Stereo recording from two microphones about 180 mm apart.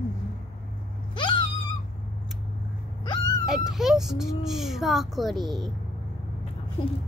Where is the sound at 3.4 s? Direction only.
Centre (ahead or behind).